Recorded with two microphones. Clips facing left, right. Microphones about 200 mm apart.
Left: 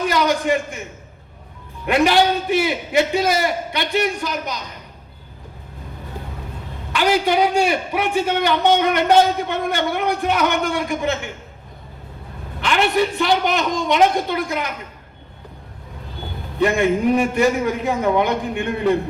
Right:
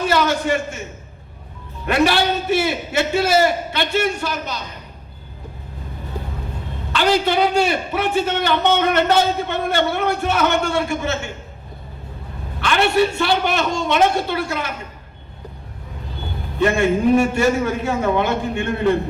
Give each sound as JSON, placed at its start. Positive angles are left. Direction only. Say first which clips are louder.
{"t": 0.0, "sound": "a sound", "louder": "even", "side_deg": 15}
{"t": 1.9, "sound": "a man's voice", "louder": "left 1 dB", "side_deg": 15}
{"t": 6.9, "sound": "a man's voice", "louder": "even", "side_deg": 15}
{"t": 12.5, "sound": "a man's voice", "louder": "right 1 dB", "side_deg": 20}
{"t": 16.6, "sound": "a man's voice", "louder": "even", "side_deg": 15}